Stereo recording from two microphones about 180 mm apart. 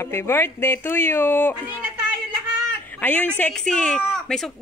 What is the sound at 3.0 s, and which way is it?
A woman's voice, 10° left (ahead or behind).